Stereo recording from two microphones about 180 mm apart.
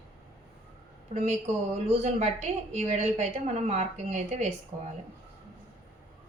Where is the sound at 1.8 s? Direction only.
40° right (ahead or behind).